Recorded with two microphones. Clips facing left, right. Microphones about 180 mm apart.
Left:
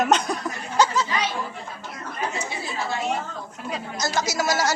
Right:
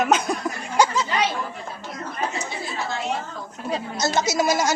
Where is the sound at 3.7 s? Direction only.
25° right (ahead or behind).